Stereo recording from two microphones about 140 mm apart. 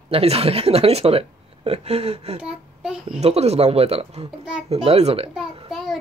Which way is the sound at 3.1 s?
50° right (ahead or behind).